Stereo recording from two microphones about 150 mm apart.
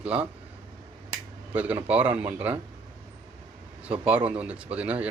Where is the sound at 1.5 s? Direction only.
10° right (ahead or behind).